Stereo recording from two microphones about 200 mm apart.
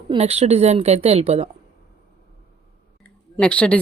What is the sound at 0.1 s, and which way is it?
A woman's voice, 30° right (ahead or behind).